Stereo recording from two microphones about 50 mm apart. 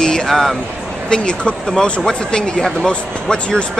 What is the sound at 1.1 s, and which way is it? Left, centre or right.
Speech, centre.